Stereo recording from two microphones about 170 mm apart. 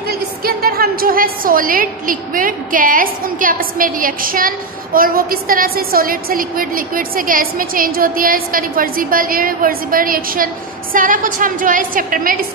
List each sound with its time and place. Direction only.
0.1 s a woman's voice: 60° right (ahead or behind)